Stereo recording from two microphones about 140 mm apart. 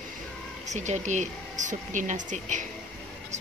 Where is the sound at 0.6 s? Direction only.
55° right (ahead or behind).